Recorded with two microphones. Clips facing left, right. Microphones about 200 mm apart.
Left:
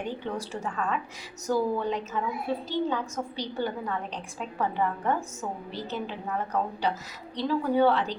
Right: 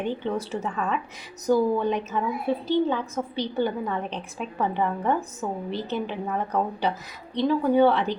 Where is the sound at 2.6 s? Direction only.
20° right (ahead or behind).